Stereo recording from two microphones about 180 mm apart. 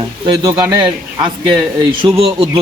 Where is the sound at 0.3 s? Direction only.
20° right (ahead or behind).